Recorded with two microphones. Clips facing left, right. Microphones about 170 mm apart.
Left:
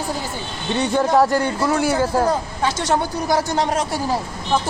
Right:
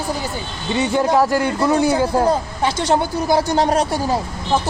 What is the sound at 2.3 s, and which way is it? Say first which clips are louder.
Speech: right 2 dB; 30° right (ahead or behind).